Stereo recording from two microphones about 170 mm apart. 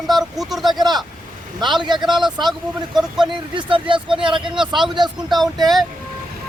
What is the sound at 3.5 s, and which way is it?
Speech, 30° right (ahead or behind).